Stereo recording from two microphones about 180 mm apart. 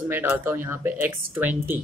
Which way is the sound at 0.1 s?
10° right (ahead or behind).